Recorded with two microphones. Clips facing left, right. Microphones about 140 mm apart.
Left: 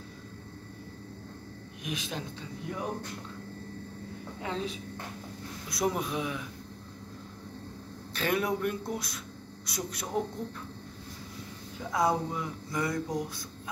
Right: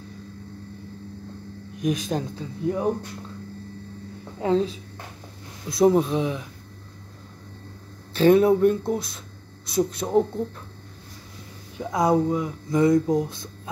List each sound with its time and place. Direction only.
1.8 s a man's voice: 40° right (ahead or behind)
4.4 s a man's voice: 35° right (ahead or behind)
8.1 s speech: 30° right (ahead or behind)
11.8 s speech: 20° right (ahead or behind)